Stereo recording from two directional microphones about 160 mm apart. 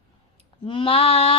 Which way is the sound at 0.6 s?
30° left (ahead or behind).